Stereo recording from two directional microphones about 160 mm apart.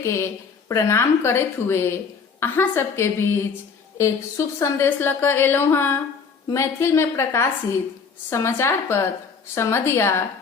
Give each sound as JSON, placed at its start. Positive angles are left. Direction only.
{"t": 0.7, "sound": "a woman's voice", "side_deg": 20}